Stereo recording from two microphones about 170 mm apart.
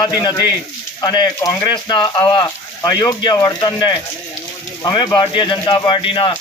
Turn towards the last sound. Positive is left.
turn(degrees=30)  # may be behind; listen again after turning